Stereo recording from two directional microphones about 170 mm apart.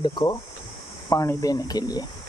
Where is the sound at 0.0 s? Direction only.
25° left (ahead or behind).